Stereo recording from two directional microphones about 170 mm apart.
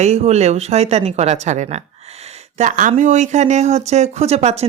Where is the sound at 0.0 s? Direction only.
40° right (ahead or behind).